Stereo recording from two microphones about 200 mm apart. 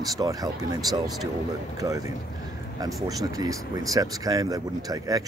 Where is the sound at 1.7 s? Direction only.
15° right (ahead or behind).